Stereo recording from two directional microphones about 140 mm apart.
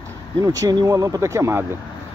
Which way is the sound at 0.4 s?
25° right (ahead or behind).